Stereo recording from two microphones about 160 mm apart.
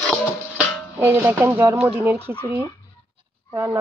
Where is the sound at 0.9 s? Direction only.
15° right (ahead or behind).